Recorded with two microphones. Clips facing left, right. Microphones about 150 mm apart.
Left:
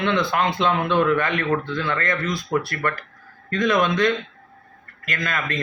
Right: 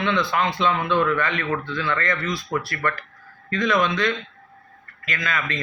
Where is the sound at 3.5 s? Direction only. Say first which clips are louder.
Left 1 dB; 45° left (ahead or behind).